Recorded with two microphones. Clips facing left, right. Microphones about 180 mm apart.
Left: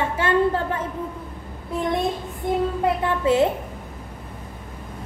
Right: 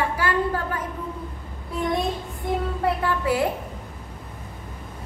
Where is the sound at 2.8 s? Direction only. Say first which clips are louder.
Left 2 dB; 20° left (ahead or behind).